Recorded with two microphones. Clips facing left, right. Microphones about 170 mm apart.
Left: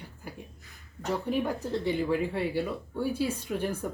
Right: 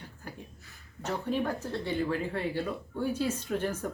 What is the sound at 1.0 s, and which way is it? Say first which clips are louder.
Speech: left 2 dB; 15° left (ahead or behind).